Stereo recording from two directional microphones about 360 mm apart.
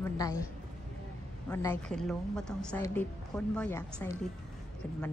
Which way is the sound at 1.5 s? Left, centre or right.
Centre.